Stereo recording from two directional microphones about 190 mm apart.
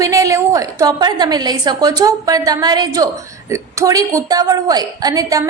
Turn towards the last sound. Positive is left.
turn(degrees=-20)  # may be behind; listen again after turning